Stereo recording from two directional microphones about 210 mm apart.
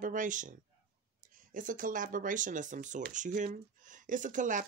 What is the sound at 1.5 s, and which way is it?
Speech, 40° right (ahead or behind).